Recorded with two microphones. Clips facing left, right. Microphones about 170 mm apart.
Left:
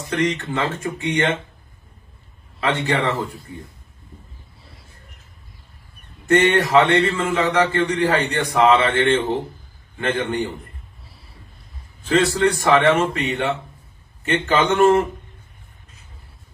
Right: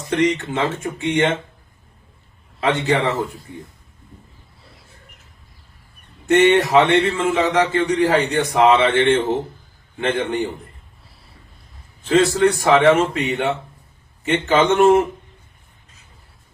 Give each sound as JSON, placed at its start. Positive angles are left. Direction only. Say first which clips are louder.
{"t": 0.2, "sound": "speech", "louder": "right 2 dB", "side_deg": -15}
{"t": 2.6, "sound": "a man's voice", "louder": "right 2 dB", "side_deg": -20}
{"t": 6.2, "sound": "a man's voice", "louder": "right 3 dB", "side_deg": -15}
{"t": 12.0, "sound": "a man's voice", "louder": "right 2 dB", "side_deg": -20}